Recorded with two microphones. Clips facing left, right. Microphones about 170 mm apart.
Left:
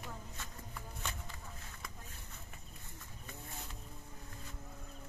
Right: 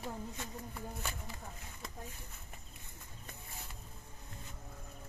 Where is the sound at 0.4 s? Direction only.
15° right (ahead or behind).